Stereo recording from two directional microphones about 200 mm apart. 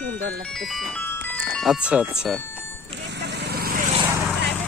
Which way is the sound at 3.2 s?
55° right (ahead or behind).